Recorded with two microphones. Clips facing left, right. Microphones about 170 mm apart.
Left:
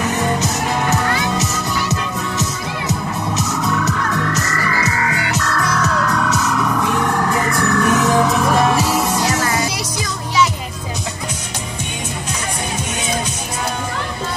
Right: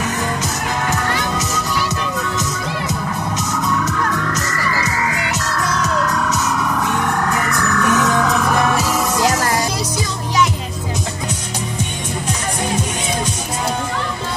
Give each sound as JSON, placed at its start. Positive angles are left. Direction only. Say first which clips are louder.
{"t": 7.4, "sound": "music", "louder": "left 2 dB", "side_deg": 30}